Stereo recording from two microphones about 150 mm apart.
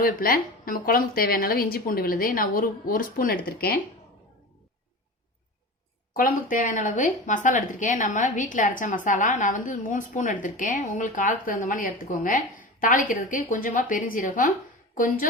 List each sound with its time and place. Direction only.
0.0 s a woman's voice: 75° left (ahead or behind)
6.1 s speech: 65° left (ahead or behind)